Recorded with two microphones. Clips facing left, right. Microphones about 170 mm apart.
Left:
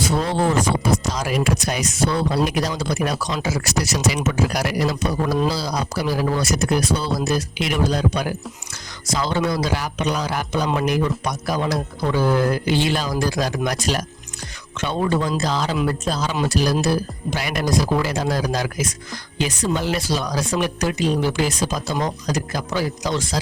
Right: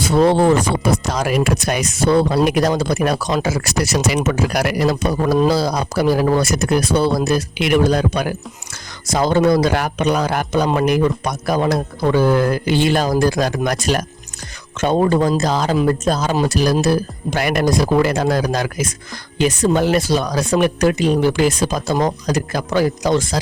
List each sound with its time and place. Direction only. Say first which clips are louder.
0.0 s speech: right 7 dB; 65° right (ahead or behind)
9.0 s speech: right 7 dB; 50° right (ahead or behind)